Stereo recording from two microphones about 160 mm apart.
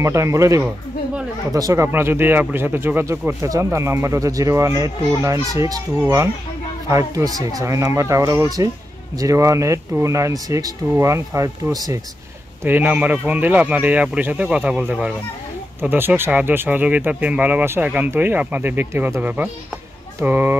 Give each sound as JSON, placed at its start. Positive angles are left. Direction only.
{"t": 0.0, "sound": "speech", "side_deg": -15}
{"t": 12.6, "sound": "speech", "side_deg": -10}